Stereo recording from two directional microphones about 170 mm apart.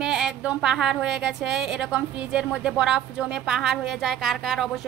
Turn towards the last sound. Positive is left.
turn(degrees=0)  # may be behind; listen again after turning